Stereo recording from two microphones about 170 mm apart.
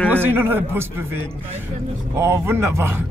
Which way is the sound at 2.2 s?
15° right (ahead or behind).